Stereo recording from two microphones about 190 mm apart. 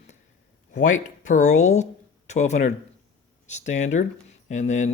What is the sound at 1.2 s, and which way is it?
Speech, 40° left (ahead or behind).